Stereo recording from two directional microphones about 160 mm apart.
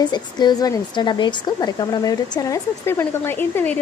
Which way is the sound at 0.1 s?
25° left (ahead or behind).